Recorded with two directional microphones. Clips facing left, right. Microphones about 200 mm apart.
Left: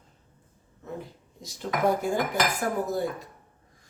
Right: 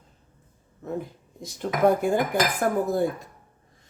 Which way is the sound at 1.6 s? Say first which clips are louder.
Right 2 dB; 50° right (ahead or behind).